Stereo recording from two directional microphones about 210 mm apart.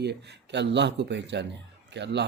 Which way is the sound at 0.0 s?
55° right (ahead or behind).